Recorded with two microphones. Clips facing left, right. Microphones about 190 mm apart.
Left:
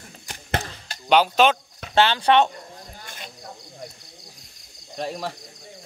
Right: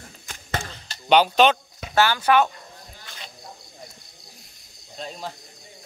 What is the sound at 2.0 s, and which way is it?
Speech, 30° left (ahead or behind).